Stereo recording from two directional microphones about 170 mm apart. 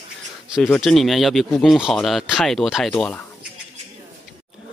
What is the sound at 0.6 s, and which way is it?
Speech, centre (ahead or behind).